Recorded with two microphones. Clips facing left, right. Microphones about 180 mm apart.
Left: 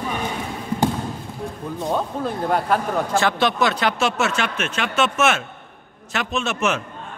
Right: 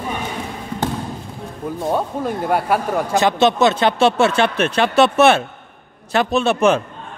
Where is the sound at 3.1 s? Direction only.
20° right (ahead or behind).